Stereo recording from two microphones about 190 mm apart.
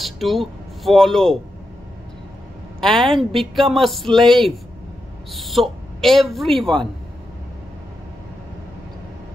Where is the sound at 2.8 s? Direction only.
Centre (ahead or behind).